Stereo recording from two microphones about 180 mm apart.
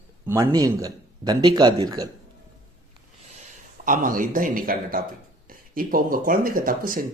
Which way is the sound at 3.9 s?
50° right (ahead or behind).